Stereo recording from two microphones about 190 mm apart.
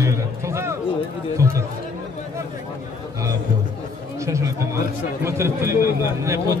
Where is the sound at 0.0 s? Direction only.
15° right (ahead or behind).